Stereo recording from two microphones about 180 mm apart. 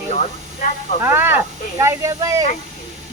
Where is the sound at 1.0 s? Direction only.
10° right (ahead or behind).